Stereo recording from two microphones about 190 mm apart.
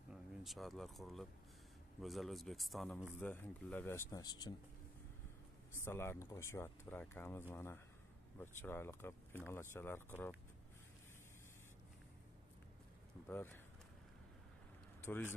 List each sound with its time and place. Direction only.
0.1 s a man's voice: centre (ahead or behind); by 4.6 s 20° left (ahead or behind)
5.8 s speech: 15° left (ahead or behind)
13.3 s speech: 10° left (ahead or behind)
15.1 s speech: 10° left (ahead or behind)